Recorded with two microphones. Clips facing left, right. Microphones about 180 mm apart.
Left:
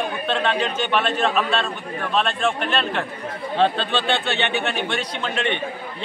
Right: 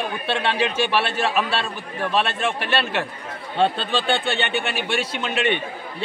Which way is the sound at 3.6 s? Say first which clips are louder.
Even; centre (ahead or behind).